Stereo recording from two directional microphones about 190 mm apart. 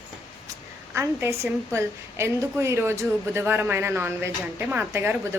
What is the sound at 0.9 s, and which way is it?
A woman's voice, 15° right (ahead or behind).